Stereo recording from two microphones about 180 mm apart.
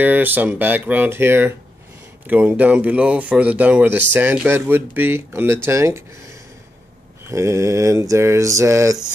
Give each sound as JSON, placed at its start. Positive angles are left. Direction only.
{"t": 0.0, "sound": "speech", "side_deg": -10}
{"t": 7.2, "sound": "speech", "side_deg": -15}